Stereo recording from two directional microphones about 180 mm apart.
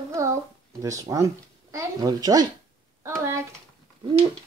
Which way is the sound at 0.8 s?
20° right (ahead or behind).